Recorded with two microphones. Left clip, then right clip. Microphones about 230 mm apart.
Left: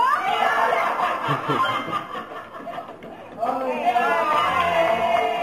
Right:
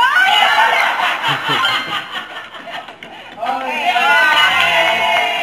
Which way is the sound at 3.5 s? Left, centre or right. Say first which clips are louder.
Right 5 dB; centre.